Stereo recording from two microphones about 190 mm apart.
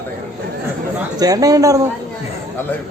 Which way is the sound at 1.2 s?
20° right (ahead or behind).